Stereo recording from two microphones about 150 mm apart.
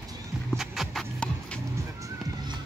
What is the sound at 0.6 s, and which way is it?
Music, centre (ahead or behind).